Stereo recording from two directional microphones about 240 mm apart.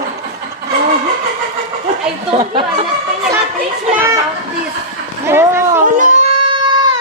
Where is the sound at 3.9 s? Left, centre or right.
Centre.